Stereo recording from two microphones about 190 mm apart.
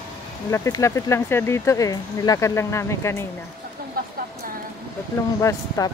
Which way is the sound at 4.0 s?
50° right (ahead or behind).